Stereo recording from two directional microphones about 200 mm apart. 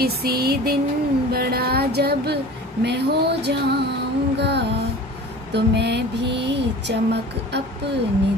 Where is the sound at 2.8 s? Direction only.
55° right (ahead or behind).